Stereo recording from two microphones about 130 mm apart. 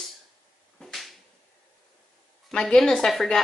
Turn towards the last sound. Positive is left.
turn(degrees=5)  # may be behind; listen again after turning